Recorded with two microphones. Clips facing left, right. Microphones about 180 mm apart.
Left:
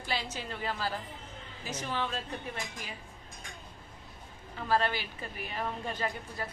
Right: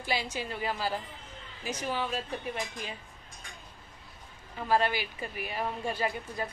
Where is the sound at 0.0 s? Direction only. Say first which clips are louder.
Right 3 dB; 10° right (ahead or behind).